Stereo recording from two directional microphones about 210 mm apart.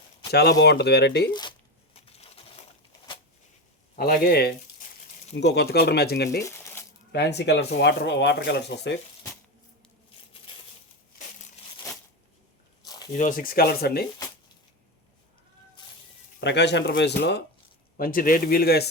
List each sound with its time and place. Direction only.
0.3 s speech: 50° left (ahead or behind)
1.3 s crumpling: 20° left (ahead or behind)
3.9 s speech: 45° left (ahead or behind)
6.4 s crumpling: 10° left (ahead or behind)
7.1 s speech: 55° left (ahead or behind)
12.8 s squish: 15° left (ahead or behind)
13.1 s speech: 40° left (ahead or behind)
16.4 s speech: 55° left (ahead or behind)
17.9 s speech: 40° left (ahead or behind)